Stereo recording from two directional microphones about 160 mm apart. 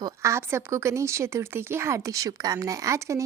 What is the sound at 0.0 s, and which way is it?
Speech, 20° right (ahead or behind).